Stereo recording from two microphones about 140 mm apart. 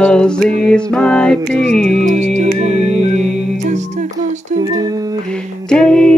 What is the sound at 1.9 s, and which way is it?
Music, 60° right (ahead or behind).